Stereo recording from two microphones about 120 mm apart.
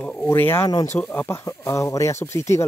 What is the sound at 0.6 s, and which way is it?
Speech, 35° left (ahead or behind).